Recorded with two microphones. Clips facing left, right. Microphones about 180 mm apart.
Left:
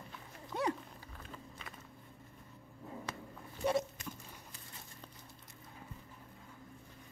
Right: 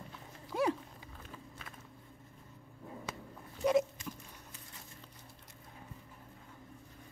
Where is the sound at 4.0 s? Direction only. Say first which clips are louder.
Right 2 dB; 60° left (ahead or behind).